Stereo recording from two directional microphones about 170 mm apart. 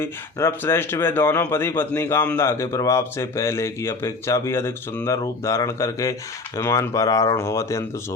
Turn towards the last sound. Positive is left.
turn(degrees=15)  # may be behind; listen again after turning